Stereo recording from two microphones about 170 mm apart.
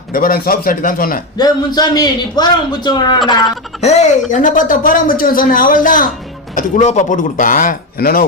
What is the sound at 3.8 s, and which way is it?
Speech, 40° left (ahead or behind).